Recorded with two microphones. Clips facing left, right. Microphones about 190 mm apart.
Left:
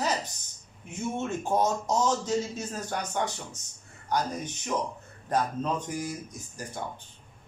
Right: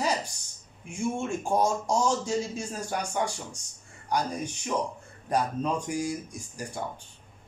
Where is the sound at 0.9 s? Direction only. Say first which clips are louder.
Right 2 dB; 10° right (ahead or behind).